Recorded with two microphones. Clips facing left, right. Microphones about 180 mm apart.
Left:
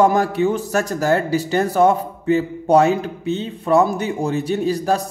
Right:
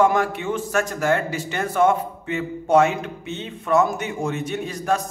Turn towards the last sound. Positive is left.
turn(degrees=35)  # may be behind; listen again after turning